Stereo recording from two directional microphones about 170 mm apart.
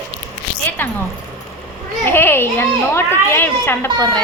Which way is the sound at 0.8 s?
10° left (ahead or behind).